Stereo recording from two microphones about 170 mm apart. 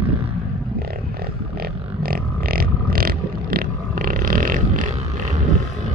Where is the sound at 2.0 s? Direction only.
60° right (ahead or behind).